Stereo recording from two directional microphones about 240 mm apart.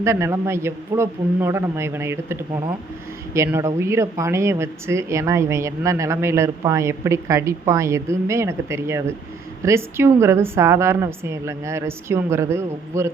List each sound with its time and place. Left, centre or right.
0.0 s speech: centre